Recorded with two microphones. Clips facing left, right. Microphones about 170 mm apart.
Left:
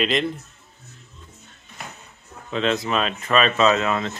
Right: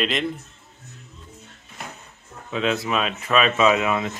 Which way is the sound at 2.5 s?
5° right (ahead or behind).